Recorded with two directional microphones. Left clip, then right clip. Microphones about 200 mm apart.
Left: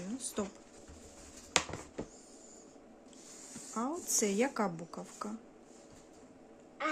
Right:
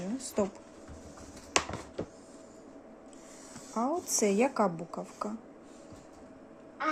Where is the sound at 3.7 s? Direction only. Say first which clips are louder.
Right 5 dB; 25° left (ahead or behind).